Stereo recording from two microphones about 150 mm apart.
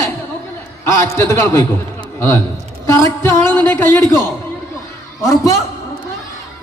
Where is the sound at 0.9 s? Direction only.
20° left (ahead or behind).